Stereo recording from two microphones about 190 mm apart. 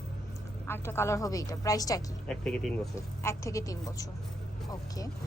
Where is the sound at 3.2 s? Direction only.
15° left (ahead or behind).